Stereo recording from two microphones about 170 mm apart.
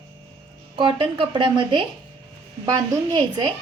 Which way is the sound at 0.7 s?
30° right (ahead or behind).